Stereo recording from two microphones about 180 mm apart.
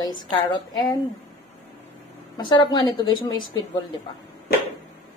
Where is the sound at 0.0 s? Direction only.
25° left (ahead or behind).